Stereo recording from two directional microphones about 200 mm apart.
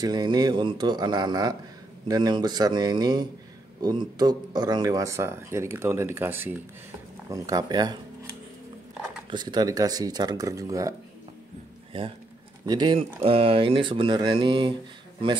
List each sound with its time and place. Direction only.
0.0 s speech: 20° right (ahead or behind)
9.3 s speech: 20° right (ahead or behind)
11.9 s speech: 25° right (ahead or behind)